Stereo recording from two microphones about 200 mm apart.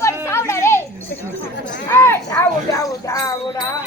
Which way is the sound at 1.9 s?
10° left (ahead or behind).